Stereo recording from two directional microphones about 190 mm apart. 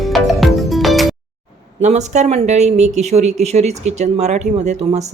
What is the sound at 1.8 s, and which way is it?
Speech, 35° right (ahead or behind).